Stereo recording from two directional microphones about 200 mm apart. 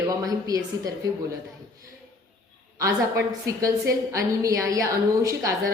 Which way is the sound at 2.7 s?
15° right (ahead or behind).